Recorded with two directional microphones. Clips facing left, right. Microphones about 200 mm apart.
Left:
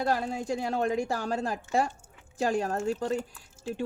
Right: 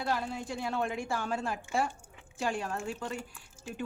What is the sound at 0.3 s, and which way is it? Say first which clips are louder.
A woman's voice: left 5 dB; 40° left (ahead or behind).